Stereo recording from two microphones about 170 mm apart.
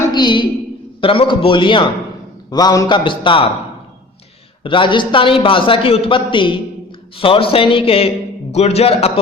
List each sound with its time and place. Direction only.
0.1 s a woman's voice: 25° left (ahead or behind)
4.6 s a man's voice: 30° left (ahead or behind)